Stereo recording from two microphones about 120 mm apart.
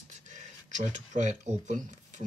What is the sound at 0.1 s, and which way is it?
Speech, 90° right.